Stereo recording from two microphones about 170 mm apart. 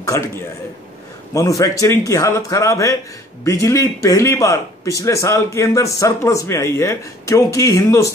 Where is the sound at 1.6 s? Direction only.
20° left (ahead or behind).